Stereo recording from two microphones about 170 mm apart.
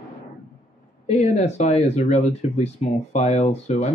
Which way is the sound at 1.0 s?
40° left (ahead or behind).